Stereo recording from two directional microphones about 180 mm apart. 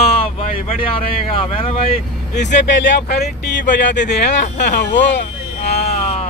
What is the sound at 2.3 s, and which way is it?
Speech, 75° left (ahead or behind).